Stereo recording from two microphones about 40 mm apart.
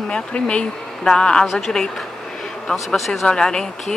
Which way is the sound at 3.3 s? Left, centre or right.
Centre.